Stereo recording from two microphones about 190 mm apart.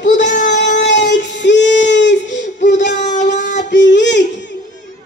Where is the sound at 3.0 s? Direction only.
40° left (ahead or behind).